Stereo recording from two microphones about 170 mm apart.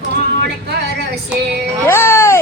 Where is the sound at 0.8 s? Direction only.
65° right (ahead or behind).